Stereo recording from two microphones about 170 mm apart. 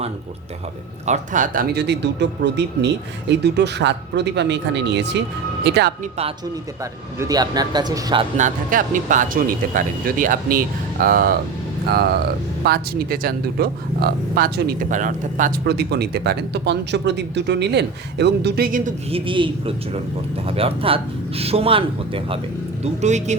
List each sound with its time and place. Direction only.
1.0 s speech: 45° right (ahead or behind); by 5.2 s 90° right
5.6 s speech: 80° right
6.0 s speech: 35° right (ahead or behind)
7.2 s a man's voice: 20° right (ahead or behind)
8.4 s speech: 50° right (ahead or behind)
12.6 s speech: 65° right (ahead or behind)
15.6 s speech: 75° right (ahead or behind); by 18.9 s 55° right (ahead or behind)
19.1 s speech: 30° right (ahead or behind)
22.8 s speech: 40° right (ahead or behind)